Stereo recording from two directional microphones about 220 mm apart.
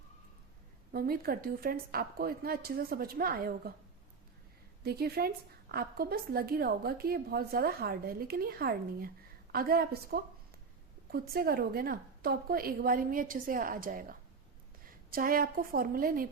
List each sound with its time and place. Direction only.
0.9 s a woman's voice: 40° right (ahead or behind)
4.8 s a woman's voice: 45° right (ahead or behind)